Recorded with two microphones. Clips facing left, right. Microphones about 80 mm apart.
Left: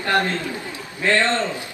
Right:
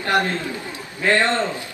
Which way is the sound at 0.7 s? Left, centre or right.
Centre.